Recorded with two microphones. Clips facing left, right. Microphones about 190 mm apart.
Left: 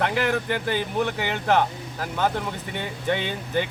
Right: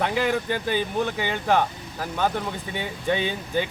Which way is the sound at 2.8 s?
15° right (ahead or behind).